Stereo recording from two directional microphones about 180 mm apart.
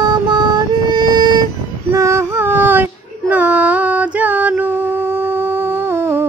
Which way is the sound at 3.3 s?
10° right (ahead or behind).